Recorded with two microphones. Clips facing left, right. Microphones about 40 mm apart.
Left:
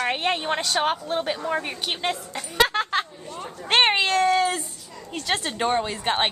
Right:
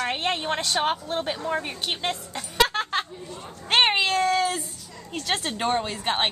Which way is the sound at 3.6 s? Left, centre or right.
Centre.